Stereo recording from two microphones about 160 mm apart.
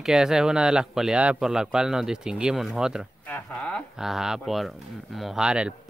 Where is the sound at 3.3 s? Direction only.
5° left (ahead or behind).